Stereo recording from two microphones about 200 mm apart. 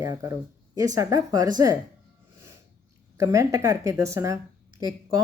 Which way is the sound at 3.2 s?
15° right (ahead or behind).